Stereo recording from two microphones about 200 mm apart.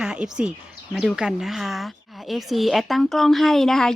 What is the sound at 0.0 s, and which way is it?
Speech, 5° right (ahead or behind).